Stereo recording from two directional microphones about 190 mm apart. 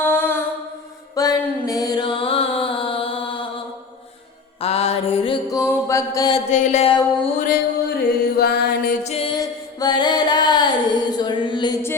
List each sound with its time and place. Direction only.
0.0 s mantra: 10° left (ahead or behind)
1.1 s music: 20° left (ahead or behind)
4.6 s mantra: 35° left (ahead or behind); by 6.3 s 15° left (ahead or behind)
6.3 s music: 40° left (ahead or behind)
7.3 s mantra: 50° left (ahead or behind)
9.0 s music: 30° left (ahead or behind)